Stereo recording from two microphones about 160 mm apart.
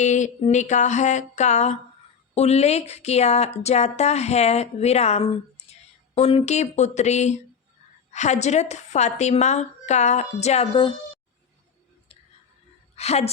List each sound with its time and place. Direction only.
0.0 s speech: 45° left (ahead or behind)
13.0 s a woman's voice: 40° left (ahead or behind)